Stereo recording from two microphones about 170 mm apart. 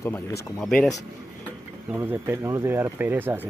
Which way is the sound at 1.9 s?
15° right (ahead or behind).